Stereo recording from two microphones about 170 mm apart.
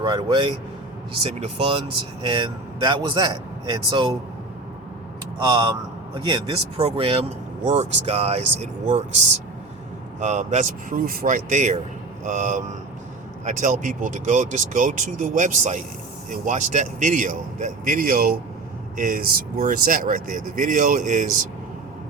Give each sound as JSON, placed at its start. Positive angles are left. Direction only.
{"t": 0.0, "sound": "a man's voice", "side_deg": -25}
{"t": 5.4, "sound": "a man's voice", "side_deg": -25}